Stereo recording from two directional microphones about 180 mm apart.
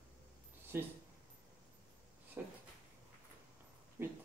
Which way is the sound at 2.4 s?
10° right (ahead or behind).